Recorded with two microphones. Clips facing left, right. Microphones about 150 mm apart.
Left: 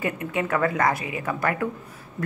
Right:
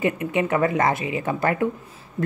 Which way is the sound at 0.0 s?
20° right (ahead or behind).